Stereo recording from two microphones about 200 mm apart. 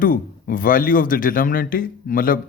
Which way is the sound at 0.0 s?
45° left (ahead or behind).